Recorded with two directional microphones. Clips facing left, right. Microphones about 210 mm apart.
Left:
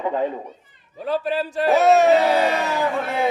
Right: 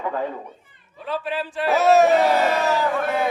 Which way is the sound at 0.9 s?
40° left (ahead or behind).